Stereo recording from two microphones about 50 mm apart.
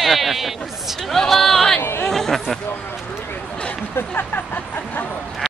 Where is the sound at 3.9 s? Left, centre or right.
Left.